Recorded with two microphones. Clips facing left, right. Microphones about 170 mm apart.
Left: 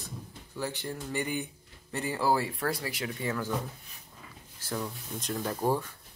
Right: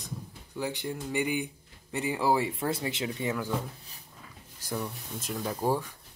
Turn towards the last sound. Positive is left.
turn(degrees=-10)  # may be behind; listen again after turning